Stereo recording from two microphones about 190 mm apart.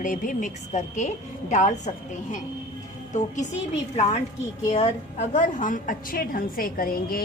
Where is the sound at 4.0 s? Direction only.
35° left (ahead or behind).